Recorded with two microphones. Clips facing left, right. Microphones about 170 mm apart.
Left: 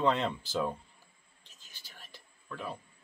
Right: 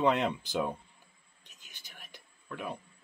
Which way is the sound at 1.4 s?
15° right (ahead or behind).